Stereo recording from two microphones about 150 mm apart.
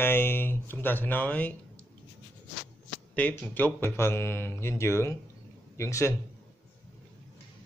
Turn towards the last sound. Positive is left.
turn(degrees=20)  # may be behind; listen again after turning